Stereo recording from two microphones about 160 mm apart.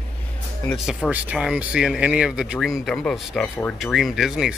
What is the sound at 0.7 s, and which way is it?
Speech, 5° right (ahead or behind).